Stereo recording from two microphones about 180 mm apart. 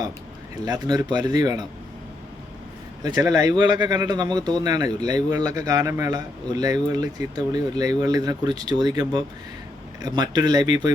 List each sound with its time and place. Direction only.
0.5 s speech: 20° right (ahead or behind)
3.0 s speech: 20° right (ahead or behind)